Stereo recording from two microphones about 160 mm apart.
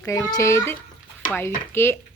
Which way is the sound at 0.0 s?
20° left (ahead or behind).